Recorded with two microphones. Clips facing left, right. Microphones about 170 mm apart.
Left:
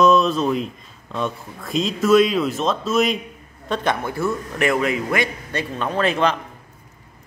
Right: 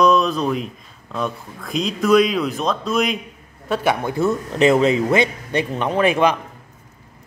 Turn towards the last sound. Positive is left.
turn(degrees=-10)  # may be behind; listen again after turning